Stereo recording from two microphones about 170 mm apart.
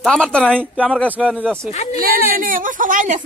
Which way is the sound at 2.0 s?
55° right (ahead or behind).